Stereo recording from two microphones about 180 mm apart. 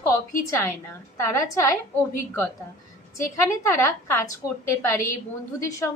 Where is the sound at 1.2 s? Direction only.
15° left (ahead or behind).